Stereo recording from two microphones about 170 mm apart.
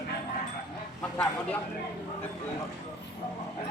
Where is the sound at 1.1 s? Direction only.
10° left (ahead or behind).